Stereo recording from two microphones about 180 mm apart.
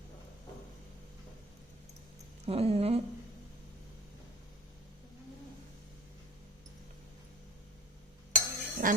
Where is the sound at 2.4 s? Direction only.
35° right (ahead or behind).